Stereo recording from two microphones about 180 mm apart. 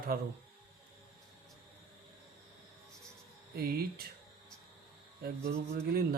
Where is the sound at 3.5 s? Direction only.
60° right (ahead or behind).